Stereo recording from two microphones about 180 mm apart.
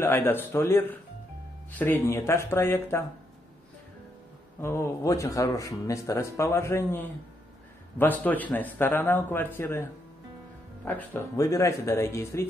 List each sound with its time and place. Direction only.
0.0 s speech: 15° left (ahead or behind)
4.6 s speech: 15° left (ahead or behind)
10.9 s speech: 10° left (ahead or behind)